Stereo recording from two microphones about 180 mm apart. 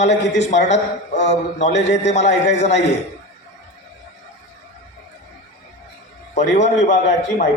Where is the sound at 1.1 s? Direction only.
40° left (ahead or behind).